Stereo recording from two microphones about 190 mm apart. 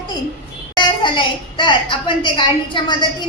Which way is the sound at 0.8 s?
25° left (ahead or behind).